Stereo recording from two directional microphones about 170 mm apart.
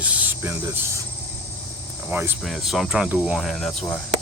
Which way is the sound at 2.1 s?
15° right (ahead or behind).